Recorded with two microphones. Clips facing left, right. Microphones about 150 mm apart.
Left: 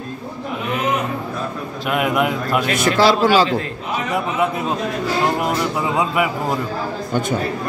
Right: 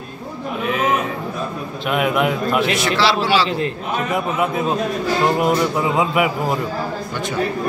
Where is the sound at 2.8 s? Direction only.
50° left (ahead or behind).